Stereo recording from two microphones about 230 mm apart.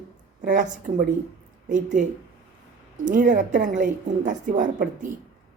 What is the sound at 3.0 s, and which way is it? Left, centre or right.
A woman's voice, right.